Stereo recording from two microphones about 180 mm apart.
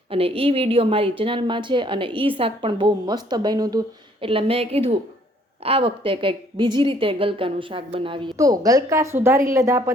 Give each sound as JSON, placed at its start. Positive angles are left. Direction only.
{"t": 0.1, "sound": "a woman's voice", "side_deg": -30}